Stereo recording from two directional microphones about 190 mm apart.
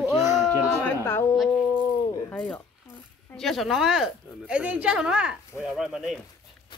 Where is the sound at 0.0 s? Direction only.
15° right (ahead or behind).